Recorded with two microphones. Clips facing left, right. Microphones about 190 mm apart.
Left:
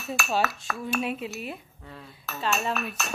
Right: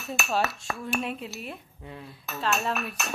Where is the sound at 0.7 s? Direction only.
25° right (ahead or behind).